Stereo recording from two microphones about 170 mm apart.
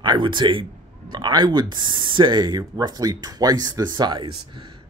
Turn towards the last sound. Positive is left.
turn(degrees=-25)  # may be behind; listen again after turning